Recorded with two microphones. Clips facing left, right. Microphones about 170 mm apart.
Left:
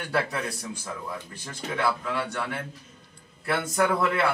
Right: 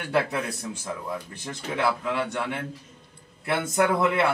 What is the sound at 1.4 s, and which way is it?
A man's voice, 20° right (ahead or behind).